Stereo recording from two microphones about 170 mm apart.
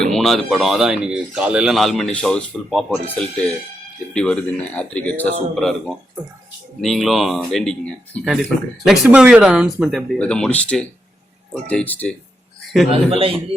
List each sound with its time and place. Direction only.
0.0 s speech: centre (ahead or behind)
12.9 s a man's voice: 35° right (ahead or behind)